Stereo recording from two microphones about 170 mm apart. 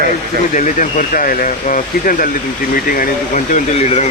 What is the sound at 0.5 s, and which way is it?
Speech, 50° left (ahead or behind).